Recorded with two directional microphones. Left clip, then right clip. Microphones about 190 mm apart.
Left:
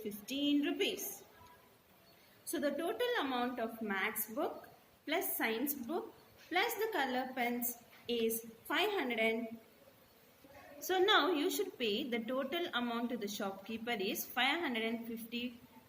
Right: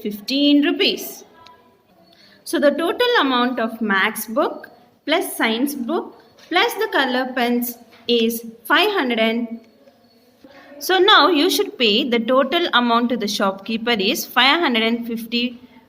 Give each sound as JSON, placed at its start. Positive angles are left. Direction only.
{"t": 0.0, "sound": "a woman's voice", "side_deg": -50}
{"t": 2.5, "sound": "a woman's voice", "side_deg": -50}
{"t": 10.8, "sound": "a woman's voice", "side_deg": -45}